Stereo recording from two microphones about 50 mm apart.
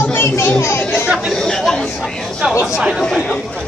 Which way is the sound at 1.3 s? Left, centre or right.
Centre.